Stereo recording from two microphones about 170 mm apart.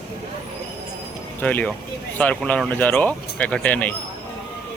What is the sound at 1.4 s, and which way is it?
Speech, 10° left (ahead or behind).